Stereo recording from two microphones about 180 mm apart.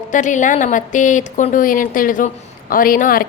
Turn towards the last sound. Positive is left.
turn(degrees=50)  # may be behind; listen again after turning